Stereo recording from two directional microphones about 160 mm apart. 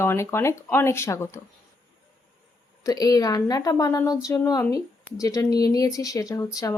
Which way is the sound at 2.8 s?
25° left (ahead or behind).